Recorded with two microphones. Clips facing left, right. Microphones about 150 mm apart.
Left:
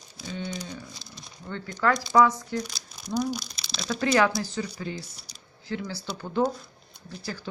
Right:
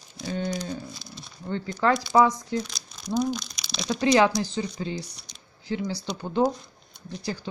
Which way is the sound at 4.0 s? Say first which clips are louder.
Right 3 dB; 20° right (ahead or behind).